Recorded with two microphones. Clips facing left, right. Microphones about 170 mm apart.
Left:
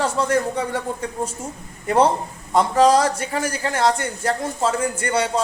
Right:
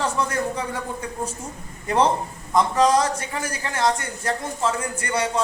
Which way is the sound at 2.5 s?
30° left (ahead or behind).